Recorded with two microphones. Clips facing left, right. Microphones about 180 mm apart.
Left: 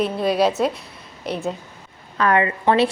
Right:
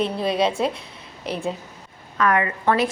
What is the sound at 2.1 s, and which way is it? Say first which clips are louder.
Speech: left 2 dB; 30° left (ahead or behind).